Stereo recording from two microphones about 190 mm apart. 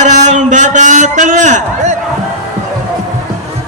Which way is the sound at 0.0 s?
40° right (ahead or behind).